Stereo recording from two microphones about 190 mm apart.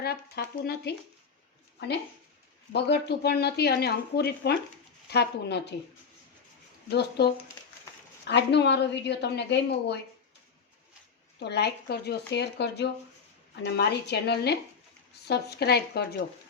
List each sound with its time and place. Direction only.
0.0 s speech: 55° left (ahead or behind)
2.7 s speech: 60° left (ahead or behind)
7.2 s speech: 60° left (ahead or behind)
11.3 s speech: 60° left (ahead or behind)